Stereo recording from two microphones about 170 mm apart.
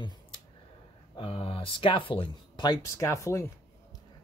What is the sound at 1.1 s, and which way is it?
Speech, 35° left (ahead or behind).